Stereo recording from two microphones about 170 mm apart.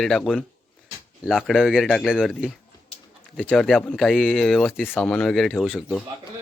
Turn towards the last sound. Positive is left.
turn(degrees=5)  # may be behind; listen again after turning